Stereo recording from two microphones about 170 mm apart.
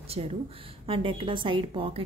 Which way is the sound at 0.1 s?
35° right (ahead or behind).